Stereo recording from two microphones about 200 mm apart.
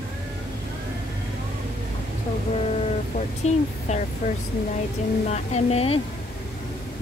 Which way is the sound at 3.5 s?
35° left (ahead or behind).